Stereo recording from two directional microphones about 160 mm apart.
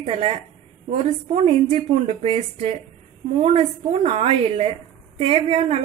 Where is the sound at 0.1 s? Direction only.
40° right (ahead or behind).